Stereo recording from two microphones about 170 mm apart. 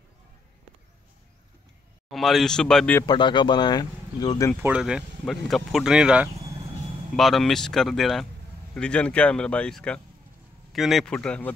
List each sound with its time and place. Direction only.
2.0 s speech: centre (ahead or behind)
3.0 s speech: 25° left (ahead or behind)
4.6 s speech: 10° right (ahead or behind)